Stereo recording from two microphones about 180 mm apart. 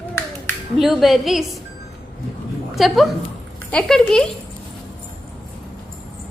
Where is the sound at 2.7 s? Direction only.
Centre (ahead or behind).